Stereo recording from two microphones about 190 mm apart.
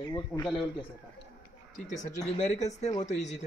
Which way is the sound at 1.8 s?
40° left (ahead or behind).